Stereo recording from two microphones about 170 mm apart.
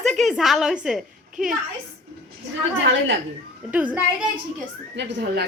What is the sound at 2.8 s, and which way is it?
Speech, 90° right.